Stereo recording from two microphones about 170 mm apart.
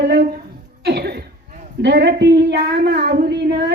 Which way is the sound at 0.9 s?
75° right (ahead or behind).